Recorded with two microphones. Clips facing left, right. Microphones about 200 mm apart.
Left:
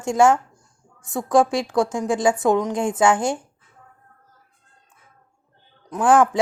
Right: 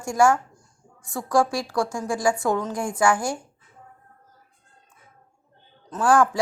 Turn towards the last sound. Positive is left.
turn(degrees=20)  # may be behind; listen again after turning